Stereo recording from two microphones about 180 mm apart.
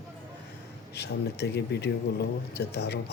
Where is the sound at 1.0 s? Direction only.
65° left (ahead or behind).